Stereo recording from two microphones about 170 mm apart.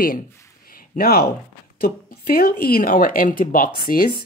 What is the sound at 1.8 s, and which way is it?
Speech, 65° left (ahead or behind).